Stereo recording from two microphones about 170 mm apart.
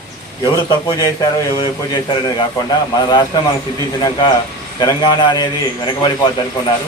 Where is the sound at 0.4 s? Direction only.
25° left (ahead or behind).